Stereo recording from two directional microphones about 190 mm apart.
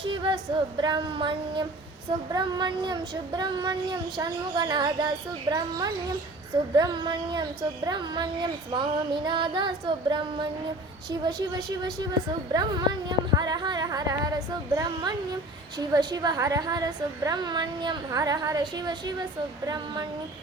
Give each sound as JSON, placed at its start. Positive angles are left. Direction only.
{"t": 0.0, "sound": "child singing", "side_deg": -25}